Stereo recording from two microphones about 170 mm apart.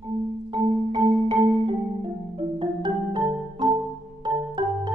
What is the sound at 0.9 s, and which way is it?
Marimba, 30° right (ahead or behind).